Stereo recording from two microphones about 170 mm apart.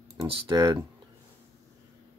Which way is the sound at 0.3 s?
25° right (ahead or behind).